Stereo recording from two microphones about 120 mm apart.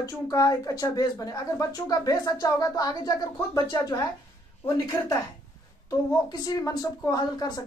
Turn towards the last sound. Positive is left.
turn(degrees=35)  # may be behind; listen again after turning